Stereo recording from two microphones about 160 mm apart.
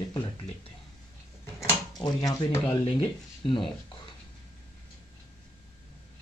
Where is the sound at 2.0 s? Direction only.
20° left (ahead or behind).